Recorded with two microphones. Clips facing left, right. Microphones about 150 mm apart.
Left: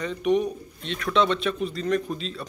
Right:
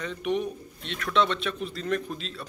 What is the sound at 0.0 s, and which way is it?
Speech, centre (ahead or behind).